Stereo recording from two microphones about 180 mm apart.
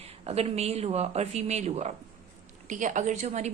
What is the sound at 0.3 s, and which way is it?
A woman's voice, 35° right (ahead or behind).